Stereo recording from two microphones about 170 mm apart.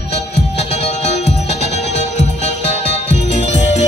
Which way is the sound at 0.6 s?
40° left (ahead or behind).